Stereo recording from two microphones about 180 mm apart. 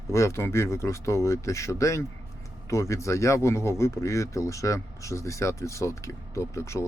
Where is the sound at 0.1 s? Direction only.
15° left (ahead or behind).